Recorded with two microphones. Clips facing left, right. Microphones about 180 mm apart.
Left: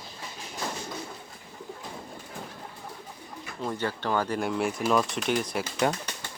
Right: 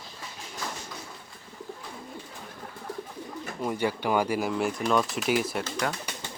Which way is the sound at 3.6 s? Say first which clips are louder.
Right 2 dB; 10° right (ahead or behind).